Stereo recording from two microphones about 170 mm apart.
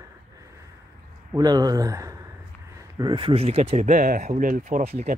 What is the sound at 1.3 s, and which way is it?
Speech, 20° right (ahead or behind).